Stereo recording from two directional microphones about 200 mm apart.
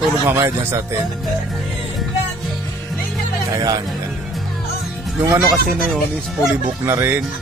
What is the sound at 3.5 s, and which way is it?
Speech, 20° right (ahead or behind).